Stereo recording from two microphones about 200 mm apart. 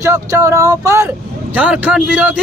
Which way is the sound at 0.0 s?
15° right (ahead or behind).